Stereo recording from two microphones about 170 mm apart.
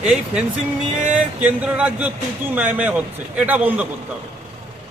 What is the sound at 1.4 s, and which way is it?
Speech, 10° right (ahead or behind).